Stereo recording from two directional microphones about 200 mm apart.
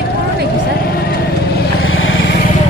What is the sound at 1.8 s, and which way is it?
Vehicle, 80° left.